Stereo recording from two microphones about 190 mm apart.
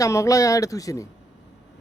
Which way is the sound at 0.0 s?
15° left (ahead or behind).